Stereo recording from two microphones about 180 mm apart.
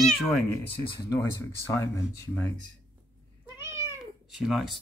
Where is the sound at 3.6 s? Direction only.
15° right (ahead or behind).